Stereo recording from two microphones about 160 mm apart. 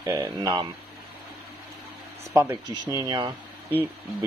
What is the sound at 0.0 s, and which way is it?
Speech, 20° right (ahead or behind).